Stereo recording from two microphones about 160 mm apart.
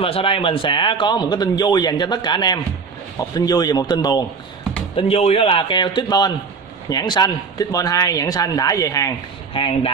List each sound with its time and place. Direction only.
0.0 s speech: 35° left (ahead or behind)
4.9 s a man's voice: 35° left (ahead or behind); by 9.1 s 20° left (ahead or behind)
9.5 s speech: 30° left (ahead or behind)